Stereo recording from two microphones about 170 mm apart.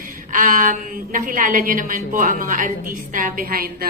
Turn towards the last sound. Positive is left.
turn(degrees=-60)  # may be behind; listen again after turning